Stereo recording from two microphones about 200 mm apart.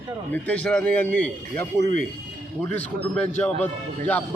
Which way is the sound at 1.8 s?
40° left (ahead or behind).